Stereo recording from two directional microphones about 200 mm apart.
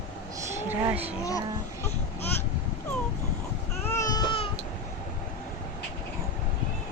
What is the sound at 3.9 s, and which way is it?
Baby cry, 15° left (ahead or behind).